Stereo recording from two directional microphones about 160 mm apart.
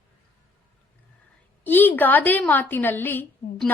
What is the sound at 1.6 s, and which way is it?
A woman's voice, 10° left (ahead or behind).